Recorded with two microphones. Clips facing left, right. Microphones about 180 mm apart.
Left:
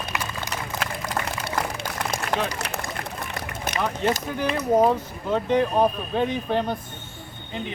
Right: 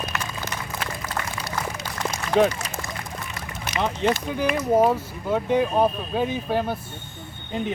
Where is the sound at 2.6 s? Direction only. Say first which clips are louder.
Left 2 dB; 70° left (ahead or behind).